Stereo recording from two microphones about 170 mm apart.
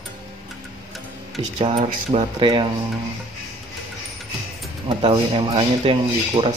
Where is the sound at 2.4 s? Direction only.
30° right (ahead or behind).